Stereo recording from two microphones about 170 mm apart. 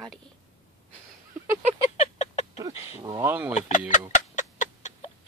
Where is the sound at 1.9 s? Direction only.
40° left (ahead or behind).